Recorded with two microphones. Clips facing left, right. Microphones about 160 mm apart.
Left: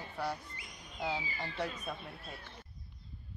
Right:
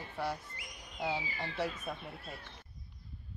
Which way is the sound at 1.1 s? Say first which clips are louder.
Right 1 dB; 5° right (ahead or behind).